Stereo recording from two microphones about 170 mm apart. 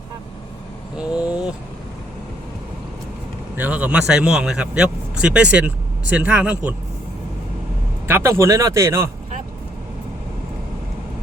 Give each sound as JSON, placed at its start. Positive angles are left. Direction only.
{"t": 1.1, "sound": "vehicle", "side_deg": -5}
{"t": 3.6, "sound": "speech", "side_deg": -10}
{"t": 8.0, "sound": "speech", "side_deg": -15}